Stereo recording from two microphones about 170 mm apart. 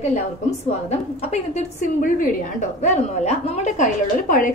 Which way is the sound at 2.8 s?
40° left (ahead or behind).